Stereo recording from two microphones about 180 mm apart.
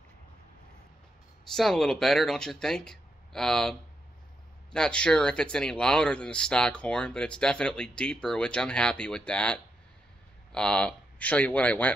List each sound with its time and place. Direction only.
1.5 s speech: centre (ahead or behind)
4.7 s speech: 5° left (ahead or behind)